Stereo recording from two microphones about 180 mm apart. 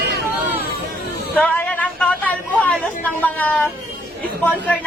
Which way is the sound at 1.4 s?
5° left (ahead or behind).